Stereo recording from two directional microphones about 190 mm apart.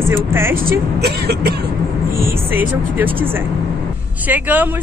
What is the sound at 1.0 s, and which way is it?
Cough, 55° right (ahead or behind).